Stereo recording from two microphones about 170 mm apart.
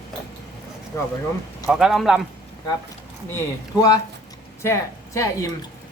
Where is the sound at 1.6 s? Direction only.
5° right (ahead or behind).